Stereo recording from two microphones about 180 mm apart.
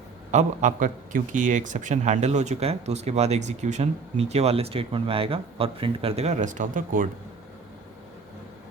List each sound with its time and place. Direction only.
0.3 s a man's voice: 40° right (ahead or behind)